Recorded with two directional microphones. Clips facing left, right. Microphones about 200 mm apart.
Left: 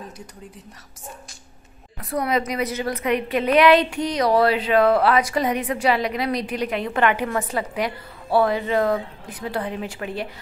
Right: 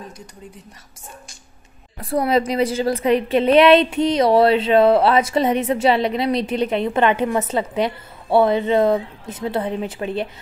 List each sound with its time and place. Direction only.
2.0 s a woman's voice: 30° right (ahead or behind)